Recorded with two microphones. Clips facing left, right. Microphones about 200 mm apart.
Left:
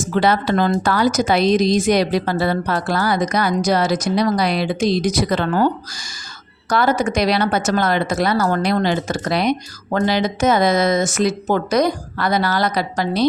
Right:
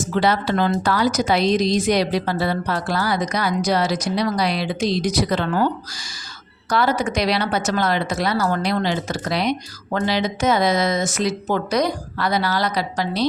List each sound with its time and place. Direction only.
0.2 s a woman's voice: 50° left (ahead or behind)